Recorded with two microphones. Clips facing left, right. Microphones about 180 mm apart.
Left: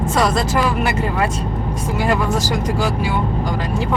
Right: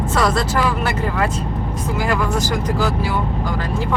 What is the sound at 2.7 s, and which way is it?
Speech, 15° left (ahead or behind).